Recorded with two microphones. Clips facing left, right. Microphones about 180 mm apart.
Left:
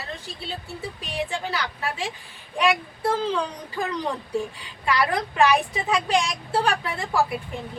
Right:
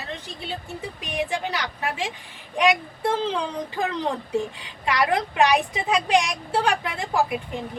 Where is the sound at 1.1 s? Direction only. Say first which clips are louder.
Right 2 dB; 15° right (ahead or behind).